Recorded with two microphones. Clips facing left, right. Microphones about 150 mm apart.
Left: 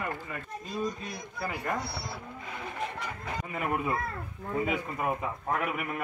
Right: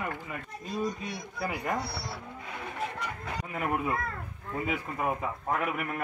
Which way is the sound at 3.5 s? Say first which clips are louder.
Even; centre (ahead or behind).